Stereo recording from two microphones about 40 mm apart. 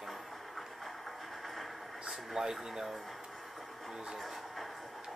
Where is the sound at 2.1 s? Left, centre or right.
Centre.